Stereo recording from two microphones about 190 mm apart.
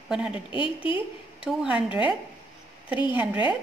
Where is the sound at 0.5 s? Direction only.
25° left (ahead or behind).